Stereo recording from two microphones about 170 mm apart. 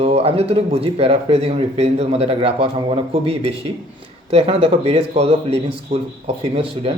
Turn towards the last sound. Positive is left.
turn(degrees=-35)  # may be behind; listen again after turning